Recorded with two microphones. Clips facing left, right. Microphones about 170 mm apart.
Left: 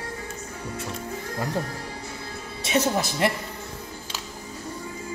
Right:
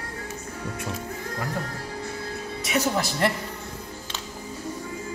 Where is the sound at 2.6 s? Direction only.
25° left (ahead or behind).